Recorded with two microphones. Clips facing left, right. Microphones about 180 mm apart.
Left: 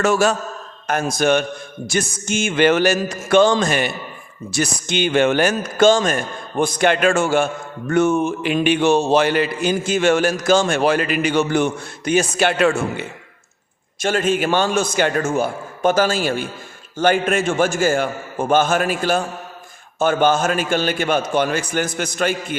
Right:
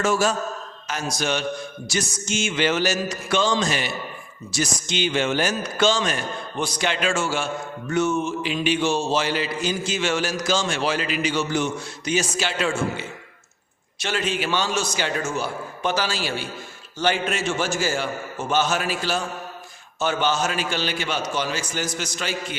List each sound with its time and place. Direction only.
0.0 s a man's voice: 65° left (ahead or behind)
0.9 s a man's voice: 55° left (ahead or behind)
14.0 s a man's voice: 45° left (ahead or behind)